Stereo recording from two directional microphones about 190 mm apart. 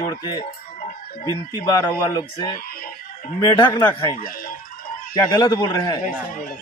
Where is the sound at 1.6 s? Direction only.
20° left (ahead or behind).